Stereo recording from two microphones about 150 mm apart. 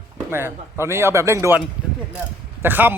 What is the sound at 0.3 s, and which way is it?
Speech, 15° right (ahead or behind).